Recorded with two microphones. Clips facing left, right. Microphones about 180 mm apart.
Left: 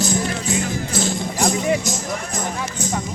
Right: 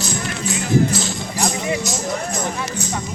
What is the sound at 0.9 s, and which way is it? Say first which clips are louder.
Music: left 2 dB; 55° left (ahead or behind).